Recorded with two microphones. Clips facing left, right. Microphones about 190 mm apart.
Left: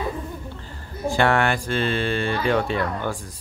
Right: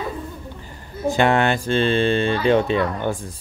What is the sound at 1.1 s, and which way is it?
Speech, 20° right (ahead or behind).